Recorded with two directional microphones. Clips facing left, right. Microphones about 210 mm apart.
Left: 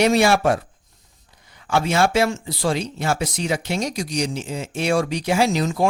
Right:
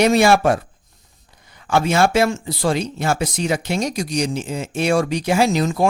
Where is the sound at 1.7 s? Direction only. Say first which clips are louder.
Right 2 dB; 50° right (ahead or behind).